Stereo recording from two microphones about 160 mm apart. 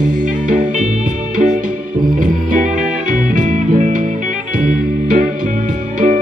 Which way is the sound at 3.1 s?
55° right (ahead or behind).